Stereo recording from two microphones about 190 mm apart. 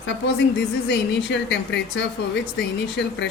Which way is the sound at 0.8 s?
65° left (ahead or behind).